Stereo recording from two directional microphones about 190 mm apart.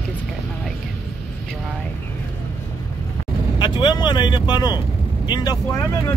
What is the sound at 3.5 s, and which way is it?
Speech, 25° left (ahead or behind).